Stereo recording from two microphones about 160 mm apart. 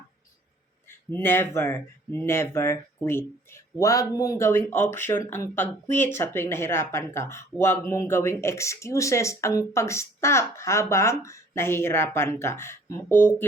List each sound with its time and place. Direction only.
0.9 s speech: 15° left (ahead or behind)